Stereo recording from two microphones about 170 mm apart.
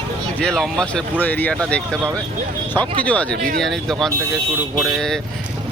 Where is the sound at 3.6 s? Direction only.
Centre (ahead or behind).